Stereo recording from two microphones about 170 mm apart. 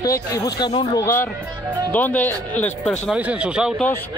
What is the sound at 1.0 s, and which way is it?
Speech, 15° left (ahead or behind).